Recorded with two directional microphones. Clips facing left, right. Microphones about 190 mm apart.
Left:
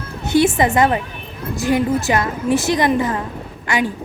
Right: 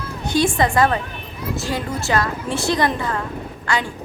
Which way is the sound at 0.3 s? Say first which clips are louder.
Left 4 dB; 20° left (ahead or behind).